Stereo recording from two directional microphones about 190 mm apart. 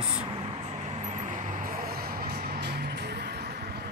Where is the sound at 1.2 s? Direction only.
40° right (ahead or behind); by 3.3 s 60° right (ahead or behind).